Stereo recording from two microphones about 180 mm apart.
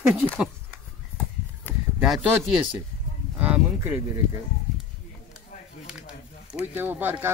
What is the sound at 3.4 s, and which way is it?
Speech, 10° right (ahead or behind).